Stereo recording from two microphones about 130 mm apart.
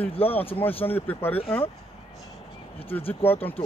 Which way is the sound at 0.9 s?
15° left (ahead or behind).